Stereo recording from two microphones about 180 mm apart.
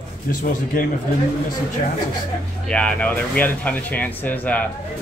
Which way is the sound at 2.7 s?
5° left (ahead or behind).